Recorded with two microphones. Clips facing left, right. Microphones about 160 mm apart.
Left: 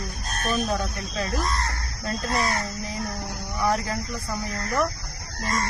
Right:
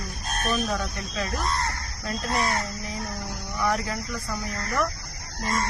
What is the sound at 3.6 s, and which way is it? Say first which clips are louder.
Speech: left 2 dB; 30° left (ahead or behind).